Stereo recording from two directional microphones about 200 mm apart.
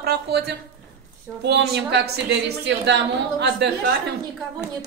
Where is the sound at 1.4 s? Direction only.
55° right (ahead or behind).